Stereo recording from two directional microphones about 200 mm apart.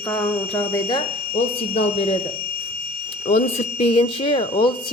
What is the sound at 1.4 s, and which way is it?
Speech, 30° left (ahead or behind).